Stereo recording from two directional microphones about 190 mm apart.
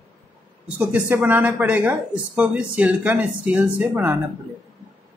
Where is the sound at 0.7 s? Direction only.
10° right (ahead or behind).